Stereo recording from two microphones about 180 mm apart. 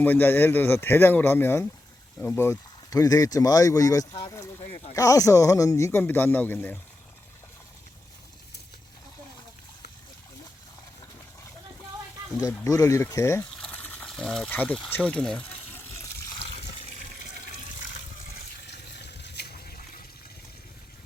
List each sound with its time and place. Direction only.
0.0 s speech: 10° left (ahead or behind)
12.4 s speech: 20° left (ahead or behind)
16.4 s water: 35° left (ahead or behind)
18.7 s water: 70° left (ahead or behind)